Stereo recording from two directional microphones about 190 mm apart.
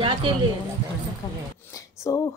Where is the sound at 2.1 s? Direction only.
15° left (ahead or behind).